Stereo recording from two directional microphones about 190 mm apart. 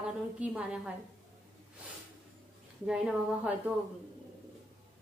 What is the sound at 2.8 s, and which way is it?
Speech, 5° right (ahead or behind).